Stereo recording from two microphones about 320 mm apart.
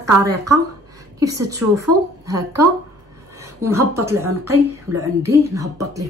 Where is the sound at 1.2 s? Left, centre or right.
Centre.